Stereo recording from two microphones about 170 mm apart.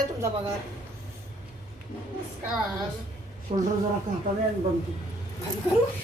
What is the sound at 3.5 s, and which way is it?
Speech, 55° right (ahead or behind).